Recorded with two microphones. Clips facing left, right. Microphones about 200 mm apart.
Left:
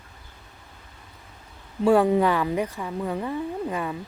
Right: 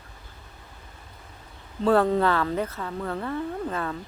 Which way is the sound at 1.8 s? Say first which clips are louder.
Left 2 dB; 10° left (ahead or behind).